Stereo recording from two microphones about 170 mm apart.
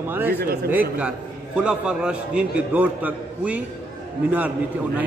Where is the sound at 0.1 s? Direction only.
10° right (ahead or behind).